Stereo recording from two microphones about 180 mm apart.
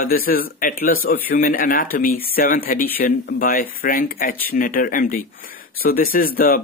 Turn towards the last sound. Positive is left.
turn(degrees=55)  # may be behind; listen again after turning